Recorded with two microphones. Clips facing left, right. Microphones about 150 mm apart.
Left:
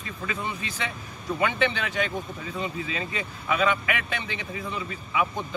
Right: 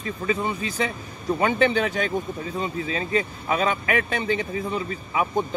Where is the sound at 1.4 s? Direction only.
40° right (ahead or behind).